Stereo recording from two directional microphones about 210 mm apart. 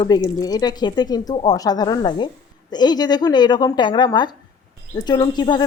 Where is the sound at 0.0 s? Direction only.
20° left (ahead or behind).